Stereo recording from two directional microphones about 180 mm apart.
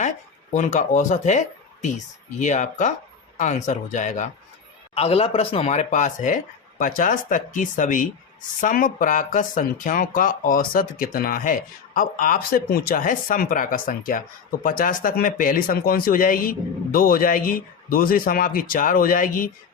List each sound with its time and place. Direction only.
0.5 s speech: 40° left (ahead or behind)